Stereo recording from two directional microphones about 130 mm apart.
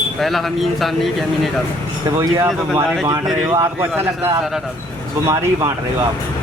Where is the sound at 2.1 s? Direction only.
20° right (ahead or behind).